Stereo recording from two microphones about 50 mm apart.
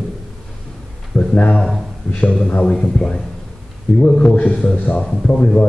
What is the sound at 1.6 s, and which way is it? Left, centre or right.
Speech, centre.